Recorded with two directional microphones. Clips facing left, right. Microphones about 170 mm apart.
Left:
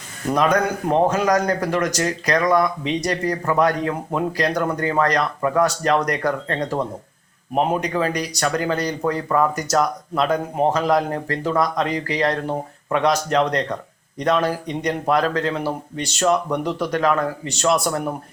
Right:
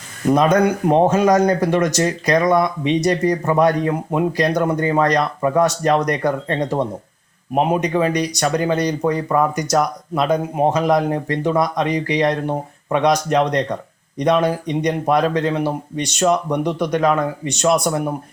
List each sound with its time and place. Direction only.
0.9 s speech: 25° right (ahead or behind)